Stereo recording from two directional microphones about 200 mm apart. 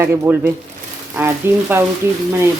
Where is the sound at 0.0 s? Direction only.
10° right (ahead or behind).